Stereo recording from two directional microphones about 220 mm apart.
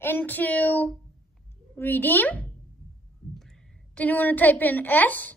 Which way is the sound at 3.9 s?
5° left (ahead or behind).